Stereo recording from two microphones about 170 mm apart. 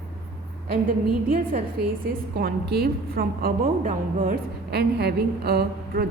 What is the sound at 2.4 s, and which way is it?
A woman's voice, 65° right (ahead or behind).